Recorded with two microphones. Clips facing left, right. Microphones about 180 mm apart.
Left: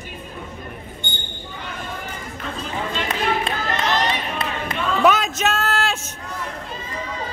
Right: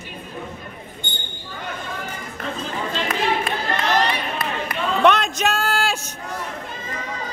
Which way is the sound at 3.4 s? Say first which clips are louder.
Even; 20° left (ahead or behind).